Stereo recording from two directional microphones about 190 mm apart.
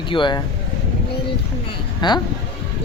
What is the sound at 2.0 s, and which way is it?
Speech, 25° left (ahead or behind).